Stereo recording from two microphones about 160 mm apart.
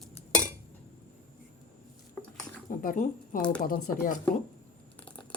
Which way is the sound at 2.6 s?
55° left (ahead or behind).